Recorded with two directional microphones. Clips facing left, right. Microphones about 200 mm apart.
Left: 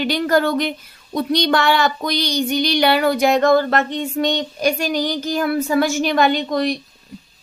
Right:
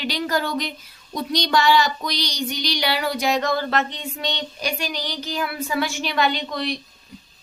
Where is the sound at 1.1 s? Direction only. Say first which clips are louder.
Left 4 dB; 60° left (ahead or behind).